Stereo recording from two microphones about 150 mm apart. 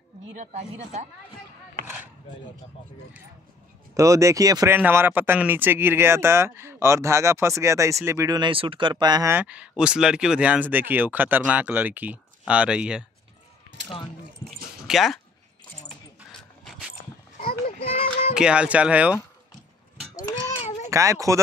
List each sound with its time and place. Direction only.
0.4 s speech: 50° right (ahead or behind)
3.9 s speech: 20° right (ahead or behind)
9.3 s speech: 10° right (ahead or behind)
14.9 s speech: centre (ahead or behind)
16.3 s dog: 5° left (ahead or behind)
17.5 s a sound: 40° left (ahead or behind)
18.3 s speech: 5° right (ahead or behind)
20.5 s a sound: 50° left (ahead or behind)
20.9 s speech: 20° right (ahead or behind)